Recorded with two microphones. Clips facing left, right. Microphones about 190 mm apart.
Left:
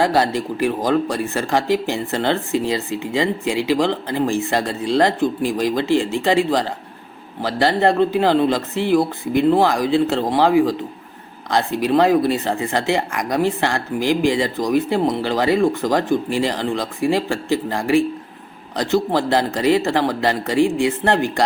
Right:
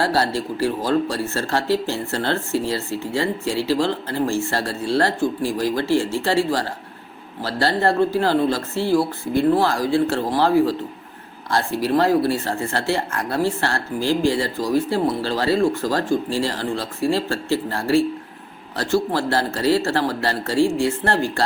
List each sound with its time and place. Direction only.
0.0 s speech: 15° left (ahead or behind)